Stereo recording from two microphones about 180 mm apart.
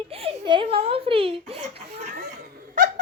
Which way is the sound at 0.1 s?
35° right (ahead or behind).